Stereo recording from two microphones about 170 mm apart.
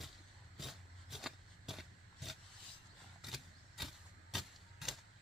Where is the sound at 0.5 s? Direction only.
Centre (ahead or behind).